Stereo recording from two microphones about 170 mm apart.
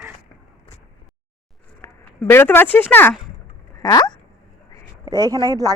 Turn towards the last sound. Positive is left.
turn(degrees=-20)  # may be behind; listen again after turning